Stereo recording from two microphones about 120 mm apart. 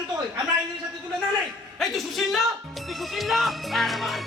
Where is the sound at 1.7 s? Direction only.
Centre (ahead or behind).